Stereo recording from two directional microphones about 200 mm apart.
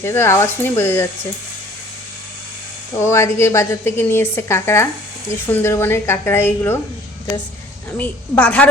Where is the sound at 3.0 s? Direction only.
15° left (ahead or behind).